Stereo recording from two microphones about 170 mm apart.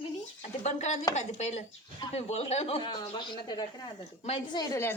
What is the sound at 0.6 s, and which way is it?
A woman's voice, 40° left (ahead or behind).